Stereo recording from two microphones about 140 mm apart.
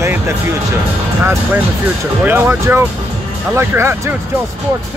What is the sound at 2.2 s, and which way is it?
Speech, 15° right (ahead or behind).